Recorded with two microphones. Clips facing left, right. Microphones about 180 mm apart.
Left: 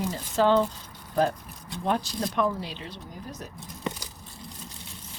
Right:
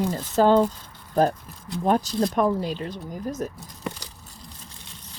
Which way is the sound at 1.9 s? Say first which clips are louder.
Right 6 dB; 45° right (ahead or behind).